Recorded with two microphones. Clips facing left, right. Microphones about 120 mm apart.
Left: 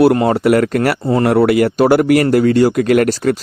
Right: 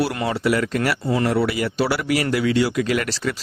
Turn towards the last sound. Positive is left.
turn(degrees=50)  # may be behind; listen again after turning